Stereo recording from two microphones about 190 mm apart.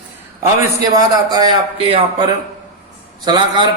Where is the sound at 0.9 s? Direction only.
20° right (ahead or behind).